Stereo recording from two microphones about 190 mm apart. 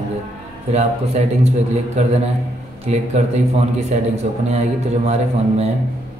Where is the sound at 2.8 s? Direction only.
35° right (ahead or behind).